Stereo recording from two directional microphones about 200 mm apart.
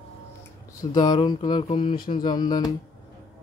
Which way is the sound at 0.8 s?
20° left (ahead or behind).